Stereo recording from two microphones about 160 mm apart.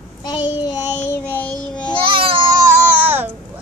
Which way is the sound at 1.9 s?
30° right (ahead or behind).